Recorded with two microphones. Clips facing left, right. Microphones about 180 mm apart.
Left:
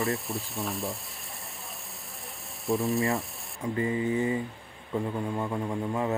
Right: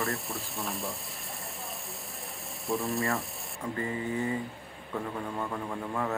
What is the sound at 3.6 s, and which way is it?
Speech, 20° left (ahead or behind).